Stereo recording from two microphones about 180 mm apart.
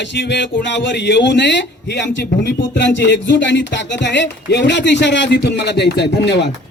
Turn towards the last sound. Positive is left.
turn(degrees=70)  # may be behind; listen again after turning